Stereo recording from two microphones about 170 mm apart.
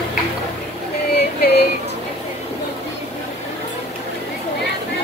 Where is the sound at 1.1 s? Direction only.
75° left (ahead or behind).